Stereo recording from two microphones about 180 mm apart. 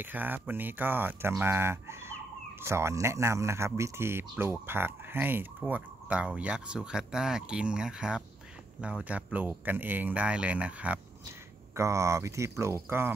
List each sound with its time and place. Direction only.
0.0 s speech: 10° right (ahead or behind)